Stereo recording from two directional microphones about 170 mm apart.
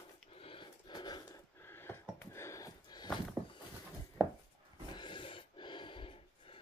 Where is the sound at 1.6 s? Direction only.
15° left (ahead or behind).